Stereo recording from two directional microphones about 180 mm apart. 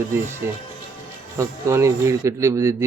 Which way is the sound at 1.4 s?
15° right (ahead or behind).